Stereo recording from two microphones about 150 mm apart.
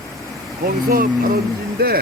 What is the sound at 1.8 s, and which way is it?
Speech, 90° right.